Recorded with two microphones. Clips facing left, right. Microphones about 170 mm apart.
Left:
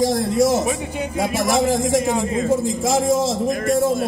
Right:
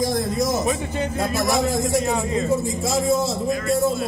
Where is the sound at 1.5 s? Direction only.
90° left.